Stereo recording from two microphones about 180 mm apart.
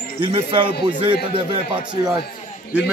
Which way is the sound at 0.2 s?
30° right (ahead or behind).